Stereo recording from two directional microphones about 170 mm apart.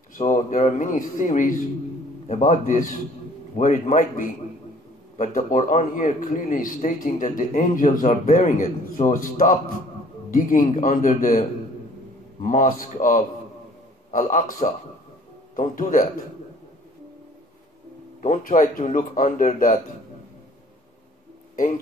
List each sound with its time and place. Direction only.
0.1 s a man's voice: 45° left (ahead or behind)
18.2 s a man's voice: 45° left (ahead or behind)